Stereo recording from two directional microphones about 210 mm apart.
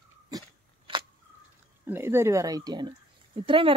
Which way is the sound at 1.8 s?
10° right (ahead or behind).